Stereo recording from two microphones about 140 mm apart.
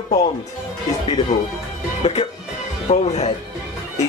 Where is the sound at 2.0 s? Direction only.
45° left (ahead or behind).